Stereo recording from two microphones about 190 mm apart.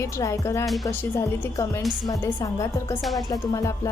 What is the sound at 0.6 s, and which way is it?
Speech, centre (ahead or behind).